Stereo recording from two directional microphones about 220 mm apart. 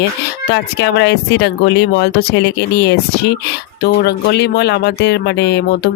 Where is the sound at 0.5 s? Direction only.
50° left (ahead or behind).